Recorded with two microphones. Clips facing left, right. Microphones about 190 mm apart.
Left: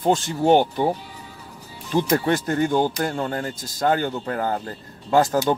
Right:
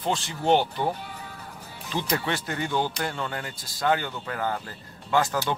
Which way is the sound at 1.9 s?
50° left (ahead or behind).